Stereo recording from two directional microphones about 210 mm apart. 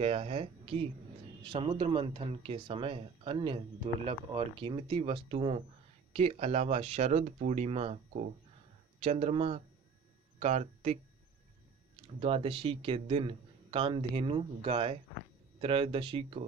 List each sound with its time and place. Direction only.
0.0 s speech: 30° right (ahead or behind)
12.2 s speech: 25° right (ahead or behind)